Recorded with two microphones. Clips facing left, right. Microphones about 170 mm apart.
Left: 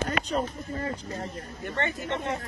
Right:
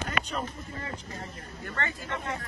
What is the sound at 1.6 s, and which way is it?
Speech, 20° left (ahead or behind).